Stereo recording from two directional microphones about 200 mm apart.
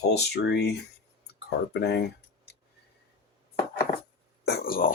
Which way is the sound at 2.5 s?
55° left (ahead or behind).